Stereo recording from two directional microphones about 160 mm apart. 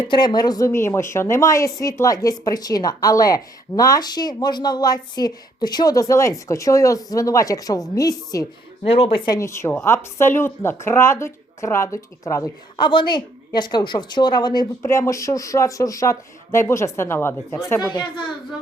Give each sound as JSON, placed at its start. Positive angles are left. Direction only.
{"t": 0.0, "sound": "speech", "side_deg": 30}
{"t": 8.8, "sound": "speech", "side_deg": 35}